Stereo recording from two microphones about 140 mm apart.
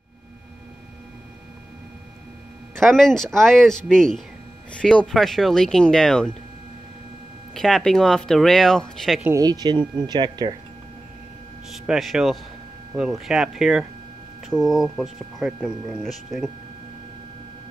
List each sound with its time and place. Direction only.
2.8 s speech: 5° left (ahead or behind)
7.5 s speech: centre (ahead or behind)
9.2 s speech: 25° right (ahead or behind)
11.7 s speech: 5° right (ahead or behind)